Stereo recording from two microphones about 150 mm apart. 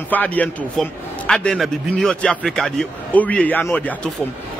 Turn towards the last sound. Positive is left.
turn(degrees=10)  # may be behind; listen again after turning